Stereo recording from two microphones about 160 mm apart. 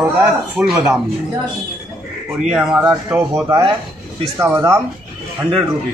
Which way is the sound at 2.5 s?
5° right (ahead or behind).